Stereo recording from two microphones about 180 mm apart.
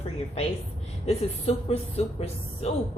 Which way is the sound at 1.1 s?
35° left (ahead or behind).